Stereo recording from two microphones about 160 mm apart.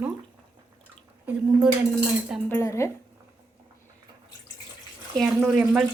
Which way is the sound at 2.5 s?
15° left (ahead or behind).